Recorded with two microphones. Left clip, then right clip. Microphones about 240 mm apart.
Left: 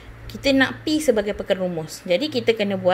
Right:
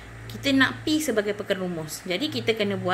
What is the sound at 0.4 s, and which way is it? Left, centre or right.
Speech, centre.